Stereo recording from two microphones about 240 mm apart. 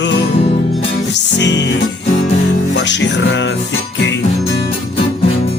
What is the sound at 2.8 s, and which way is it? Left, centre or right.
Music, left.